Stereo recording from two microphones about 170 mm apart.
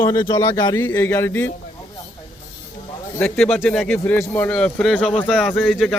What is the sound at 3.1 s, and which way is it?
A man's voice, 5° left (ahead or behind).